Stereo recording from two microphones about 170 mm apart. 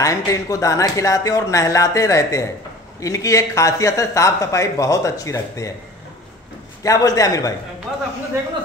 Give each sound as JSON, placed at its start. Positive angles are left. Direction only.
{"t": 0.0, "sound": "speech", "side_deg": 20}
{"t": 6.8, "sound": "speech", "side_deg": 20}